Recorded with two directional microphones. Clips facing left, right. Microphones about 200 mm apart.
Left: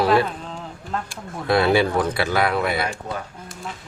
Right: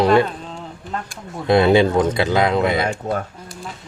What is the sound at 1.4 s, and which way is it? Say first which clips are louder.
Speech: right 4 dB; 20° right (ahead or behind).